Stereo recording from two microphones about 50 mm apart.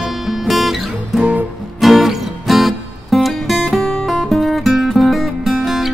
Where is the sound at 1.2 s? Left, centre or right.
Right.